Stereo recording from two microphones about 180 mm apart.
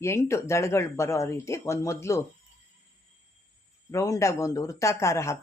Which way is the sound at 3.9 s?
15° left (ahead or behind).